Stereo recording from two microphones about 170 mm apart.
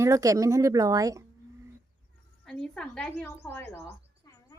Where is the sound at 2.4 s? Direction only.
5° left (ahead or behind).